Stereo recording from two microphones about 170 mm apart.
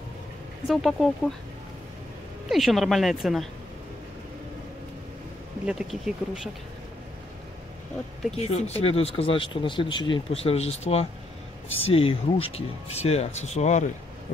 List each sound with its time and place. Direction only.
0.7 s speech: centre (ahead or behind)
2.5 s speech: centre (ahead or behind)
5.7 s speech: 5° right (ahead or behind)
8.4 s speech: 40° left (ahead or behind)